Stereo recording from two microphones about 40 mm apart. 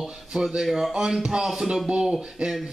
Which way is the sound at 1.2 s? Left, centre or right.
Centre.